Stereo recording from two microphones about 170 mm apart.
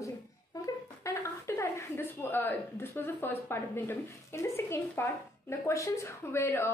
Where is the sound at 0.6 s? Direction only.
15° left (ahead or behind).